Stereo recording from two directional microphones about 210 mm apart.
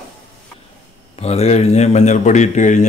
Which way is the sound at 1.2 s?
30° left (ahead or behind).